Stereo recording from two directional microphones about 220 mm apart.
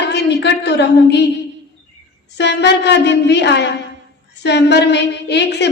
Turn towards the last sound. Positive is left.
turn(degrees=50)  # may be behind; listen again after turning